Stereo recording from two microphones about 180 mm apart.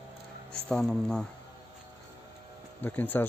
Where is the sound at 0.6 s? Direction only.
Centre (ahead or behind).